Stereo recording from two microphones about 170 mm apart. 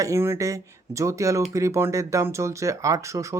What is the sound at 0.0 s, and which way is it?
Speech, 15° right (ahead or behind).